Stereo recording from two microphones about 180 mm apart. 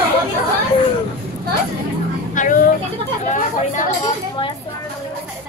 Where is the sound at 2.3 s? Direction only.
45° left (ahead or behind).